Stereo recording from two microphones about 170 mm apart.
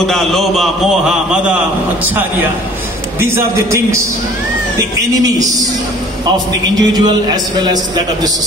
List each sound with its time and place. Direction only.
0.0 s a man's voice: centre (ahead or behind)
3.2 s a man's voice: 15° right (ahead or behind)